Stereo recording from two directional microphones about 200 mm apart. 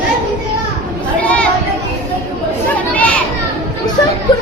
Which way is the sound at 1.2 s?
5° left (ahead or behind).